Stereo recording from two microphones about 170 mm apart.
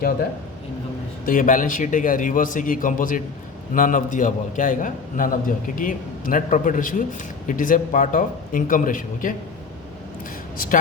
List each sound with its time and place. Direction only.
1.3 s a man's voice: 50° left (ahead or behind)